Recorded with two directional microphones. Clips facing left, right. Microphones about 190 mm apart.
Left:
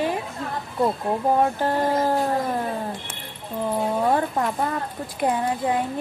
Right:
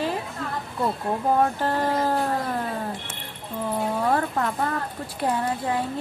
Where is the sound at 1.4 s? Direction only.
15° left (ahead or behind).